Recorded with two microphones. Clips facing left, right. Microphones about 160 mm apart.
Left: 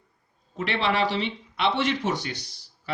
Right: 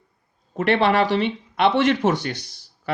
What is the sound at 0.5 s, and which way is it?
A man's voice, 50° right (ahead or behind).